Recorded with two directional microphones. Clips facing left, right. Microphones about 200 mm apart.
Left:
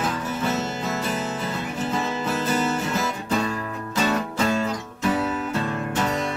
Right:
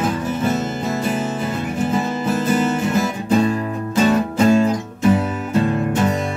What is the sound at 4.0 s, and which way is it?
Music, 25° right (ahead or behind).